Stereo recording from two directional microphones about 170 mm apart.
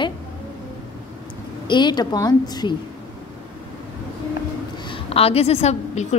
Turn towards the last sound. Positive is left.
turn(degrees=40)  # may be behind; listen again after turning